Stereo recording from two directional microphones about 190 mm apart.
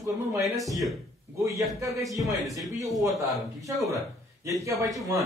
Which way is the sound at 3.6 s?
15° right (ahead or behind).